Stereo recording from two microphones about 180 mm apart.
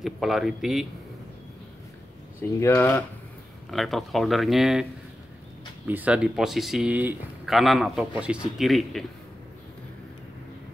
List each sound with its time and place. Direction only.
0.0 s speech: centre (ahead or behind)
2.6 s speech: 15° left (ahead or behind)
3.7 s speech: centre (ahead or behind)
5.9 s speech: 10° right (ahead or behind)